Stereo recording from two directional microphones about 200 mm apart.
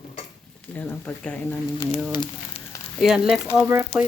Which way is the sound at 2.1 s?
20° left (ahead or behind).